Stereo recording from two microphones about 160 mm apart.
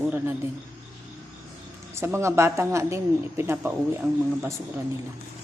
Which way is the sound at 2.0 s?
15° right (ahead or behind).